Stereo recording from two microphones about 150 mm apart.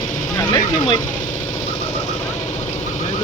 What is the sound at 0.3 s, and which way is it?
Vehicle, 25° left (ahead or behind).